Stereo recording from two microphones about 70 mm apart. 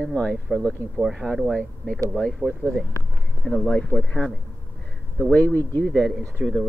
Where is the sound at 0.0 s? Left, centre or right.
Centre.